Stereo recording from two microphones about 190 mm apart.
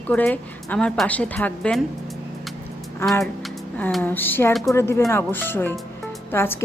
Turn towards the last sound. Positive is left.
turn(degrees=10)  # may be behind; listen again after turning